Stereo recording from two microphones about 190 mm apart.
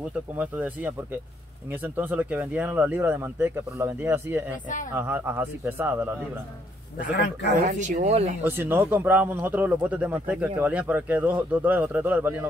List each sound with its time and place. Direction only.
0.4 s speech: 10° right (ahead or behind)
7.6 s speech: 40° right (ahead or behind)
8.5 s speech: 10° right (ahead or behind)